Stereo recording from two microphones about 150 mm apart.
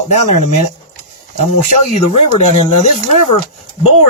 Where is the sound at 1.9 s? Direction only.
50° left (ahead or behind).